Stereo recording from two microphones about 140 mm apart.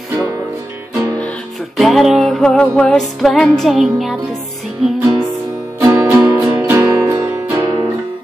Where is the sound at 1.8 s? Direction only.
Centre (ahead or behind).